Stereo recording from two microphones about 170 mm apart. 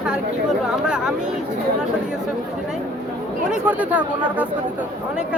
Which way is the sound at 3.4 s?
10° right (ahead or behind).